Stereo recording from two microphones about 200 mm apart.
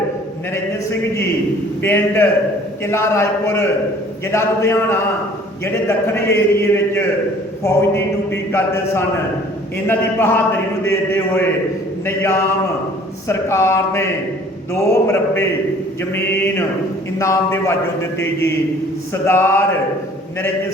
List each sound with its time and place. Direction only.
1.8 s a man's voice: 10° left (ahead or behind)